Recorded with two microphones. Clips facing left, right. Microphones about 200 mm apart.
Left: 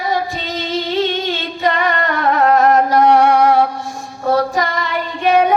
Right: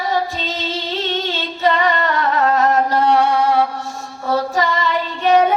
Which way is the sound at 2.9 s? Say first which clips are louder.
Left 4 dB; 15° left (ahead or behind).